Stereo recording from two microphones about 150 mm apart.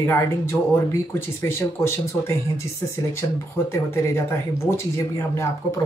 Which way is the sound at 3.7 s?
15° left (ahead or behind).